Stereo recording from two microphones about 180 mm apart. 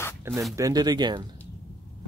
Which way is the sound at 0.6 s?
20° right (ahead or behind).